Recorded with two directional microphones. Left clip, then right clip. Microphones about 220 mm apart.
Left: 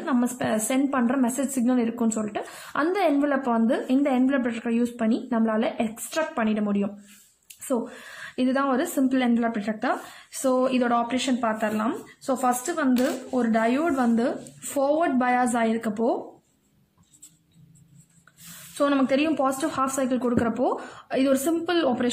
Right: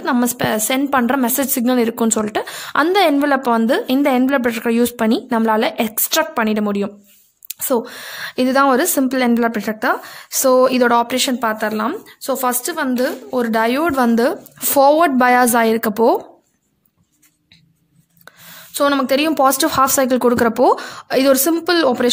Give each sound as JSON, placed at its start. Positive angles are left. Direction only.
{"t": 0.0, "sound": "a woman's voice", "side_deg": -50}
{"t": 18.8, "sound": "a woman's voice", "side_deg": -50}